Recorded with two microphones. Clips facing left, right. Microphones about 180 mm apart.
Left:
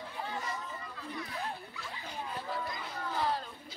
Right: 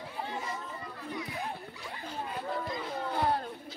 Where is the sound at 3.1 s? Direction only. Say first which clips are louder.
Right 3 dB; 55° right (ahead or behind).